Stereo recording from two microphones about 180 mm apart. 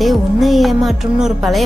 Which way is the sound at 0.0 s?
Centre (ahead or behind).